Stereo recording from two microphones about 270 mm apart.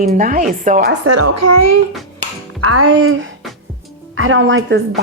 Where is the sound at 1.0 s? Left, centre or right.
Right.